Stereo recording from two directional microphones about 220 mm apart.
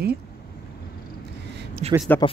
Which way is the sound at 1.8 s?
30° right (ahead or behind).